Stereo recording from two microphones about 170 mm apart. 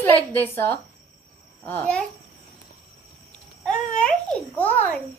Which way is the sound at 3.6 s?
5° left (ahead or behind).